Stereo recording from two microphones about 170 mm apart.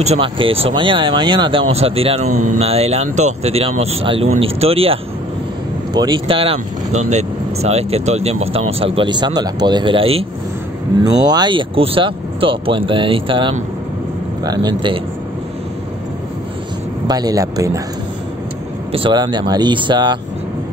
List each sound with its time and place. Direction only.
0.0 s speech: 35° right (ahead or behind)
5.9 s speech: 25° right (ahead or behind)
17.1 s speech: 20° right (ahead or behind)
18.9 s speech: 30° right (ahead or behind)